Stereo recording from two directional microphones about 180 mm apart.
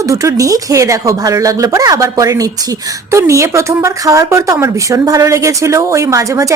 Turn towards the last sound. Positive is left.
turn(degrees=-15)  # may be behind; listen again after turning